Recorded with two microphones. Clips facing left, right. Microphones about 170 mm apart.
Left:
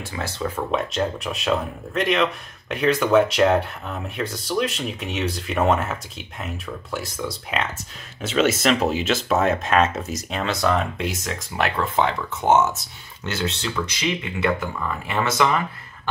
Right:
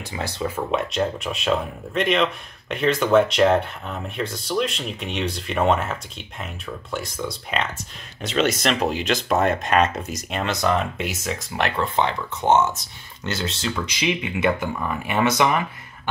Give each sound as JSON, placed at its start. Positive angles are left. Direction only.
{"t": 0.1, "sound": "speech", "side_deg": -15}
{"t": 0.7, "sound": "speech", "side_deg": 0}
{"t": 13.9, "sound": "speech", "side_deg": -15}